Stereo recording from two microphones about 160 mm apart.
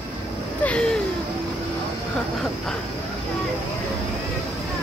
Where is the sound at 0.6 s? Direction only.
5° left (ahead or behind).